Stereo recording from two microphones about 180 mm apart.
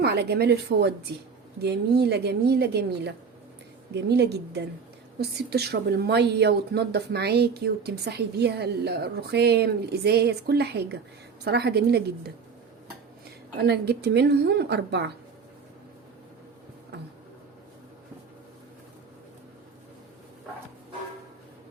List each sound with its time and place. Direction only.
0.0 s a woman's voice: 65° right (ahead or behind)
13.6 s speech: 65° right (ahead or behind)